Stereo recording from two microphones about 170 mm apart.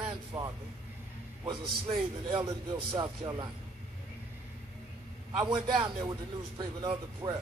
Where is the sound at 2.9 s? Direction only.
25° right (ahead or behind).